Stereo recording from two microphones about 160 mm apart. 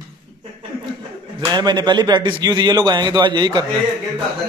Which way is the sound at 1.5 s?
25° right (ahead or behind).